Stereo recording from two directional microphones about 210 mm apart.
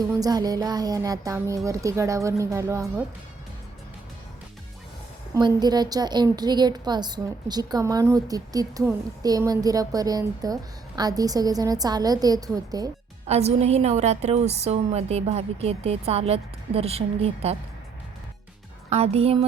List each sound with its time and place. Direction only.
0.2 s a woman's voice: 20° right (ahead or behind)
5.3 s a woman's voice: 20° right (ahead or behind)
13.2 s a woman's voice: 30° right (ahead or behind)
18.9 s a woman's voice: 30° right (ahead or behind)